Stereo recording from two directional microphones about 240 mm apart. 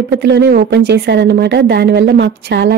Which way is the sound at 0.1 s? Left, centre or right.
Right.